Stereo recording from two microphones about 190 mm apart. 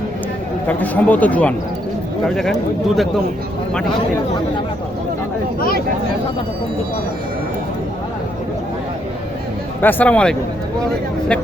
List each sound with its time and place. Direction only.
0.7 s speech: 10° left (ahead or behind)
5.5 s vehicle: 50° left (ahead or behind)
9.8 s speech: 5° left (ahead or behind)